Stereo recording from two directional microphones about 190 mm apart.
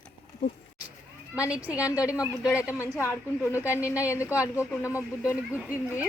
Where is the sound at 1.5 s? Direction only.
5° right (ahead or behind).